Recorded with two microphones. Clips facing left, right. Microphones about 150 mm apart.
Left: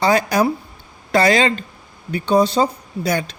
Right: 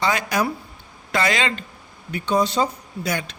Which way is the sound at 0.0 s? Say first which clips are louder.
Left 6 dB; 35° left (ahead or behind).